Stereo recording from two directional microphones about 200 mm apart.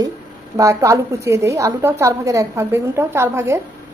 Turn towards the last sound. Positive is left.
turn(degrees=-15)  # may be behind; listen again after turning